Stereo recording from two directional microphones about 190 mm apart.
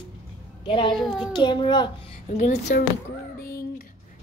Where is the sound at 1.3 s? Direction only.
25° left (ahead or behind).